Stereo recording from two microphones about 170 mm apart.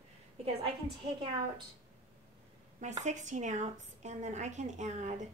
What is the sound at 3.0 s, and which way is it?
A woman's voice, 45° right (ahead or behind).